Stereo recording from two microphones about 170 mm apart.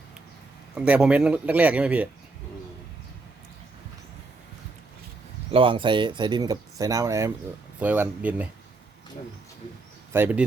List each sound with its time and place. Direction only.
0.8 s speech: 5° right (ahead or behind)
5.5 s speech: 30° right (ahead or behind); by 8.4 s 10° right (ahead or behind)
10.1 s speech: 10° right (ahead or behind)